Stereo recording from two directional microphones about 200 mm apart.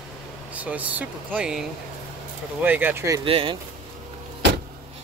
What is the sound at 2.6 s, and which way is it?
Speech, 10° right (ahead or behind).